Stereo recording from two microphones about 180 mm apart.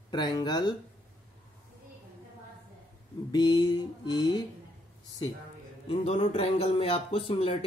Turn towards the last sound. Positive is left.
turn(degrees=30)  # may be behind; listen again after turning